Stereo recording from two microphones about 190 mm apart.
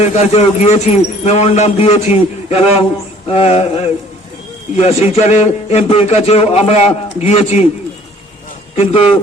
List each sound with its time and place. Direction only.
0.0 s a man's voice: 35° left (ahead or behind)
8.7 s speech: 30° left (ahead or behind)